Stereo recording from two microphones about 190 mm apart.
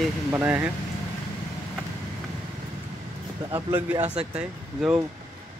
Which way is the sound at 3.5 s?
10° right (ahead or behind).